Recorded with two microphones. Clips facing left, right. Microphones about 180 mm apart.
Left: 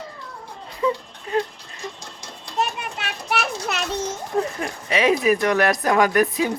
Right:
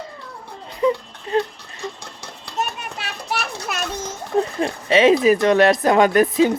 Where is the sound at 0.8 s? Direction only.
30° right (ahead or behind).